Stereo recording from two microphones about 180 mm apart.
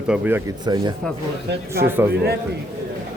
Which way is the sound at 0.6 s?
25° right (ahead or behind).